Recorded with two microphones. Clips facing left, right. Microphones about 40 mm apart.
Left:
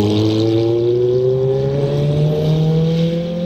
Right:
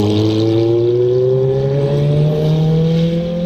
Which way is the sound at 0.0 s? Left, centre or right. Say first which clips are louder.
Right 1 dB; centre.